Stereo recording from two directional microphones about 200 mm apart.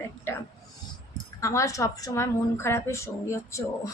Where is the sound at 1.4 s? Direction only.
15° left (ahead or behind).